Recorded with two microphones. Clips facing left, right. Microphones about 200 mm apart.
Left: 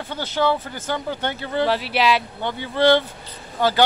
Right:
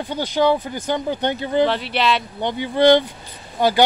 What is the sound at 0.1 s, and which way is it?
Speech, 15° right (ahead or behind).